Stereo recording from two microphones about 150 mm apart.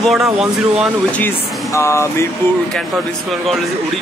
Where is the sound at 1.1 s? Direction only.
15° left (ahead or behind).